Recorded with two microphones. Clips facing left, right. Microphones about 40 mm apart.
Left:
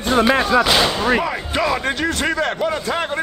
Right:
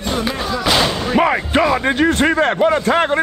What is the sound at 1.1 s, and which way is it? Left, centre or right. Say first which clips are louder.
A man's voice: right 6 dB; right.